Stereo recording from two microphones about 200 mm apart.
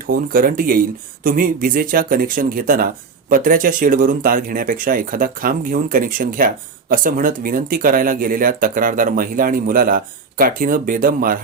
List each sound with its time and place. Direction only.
0.1 s speech: 45° right (ahead or behind)